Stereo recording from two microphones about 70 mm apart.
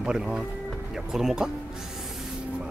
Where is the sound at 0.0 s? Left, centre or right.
Centre.